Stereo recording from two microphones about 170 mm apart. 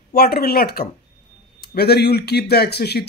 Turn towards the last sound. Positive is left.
turn(degrees=70)  # may be behind; listen again after turning